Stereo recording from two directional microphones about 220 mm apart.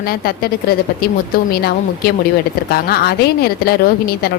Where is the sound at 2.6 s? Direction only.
45° left (ahead or behind).